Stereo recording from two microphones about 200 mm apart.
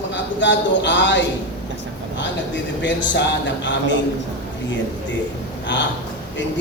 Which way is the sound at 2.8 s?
65° left (ahead or behind).